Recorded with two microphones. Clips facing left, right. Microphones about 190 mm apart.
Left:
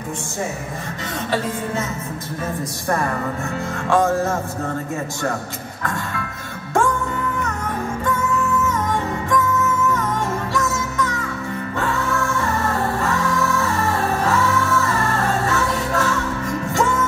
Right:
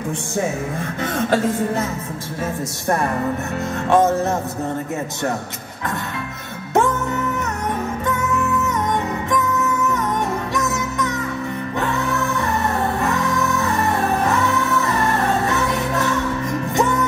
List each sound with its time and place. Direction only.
3.9 s music: 20° right (ahead or behind)
10.5 s music: 20° right (ahead or behind)
13.0 s music: 20° right (ahead or behind)